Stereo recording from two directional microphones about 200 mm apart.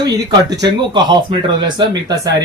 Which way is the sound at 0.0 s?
20° right (ahead or behind).